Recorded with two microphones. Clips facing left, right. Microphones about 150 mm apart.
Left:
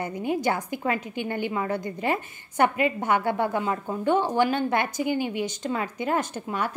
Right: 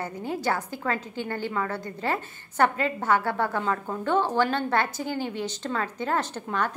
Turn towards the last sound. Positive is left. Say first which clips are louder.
# even
turn(degrees=10)  # may be behind; listen again after turning